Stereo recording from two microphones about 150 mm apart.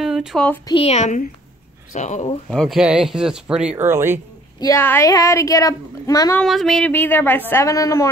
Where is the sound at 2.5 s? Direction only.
Centre (ahead or behind); by 4.1 s 15° right (ahead or behind).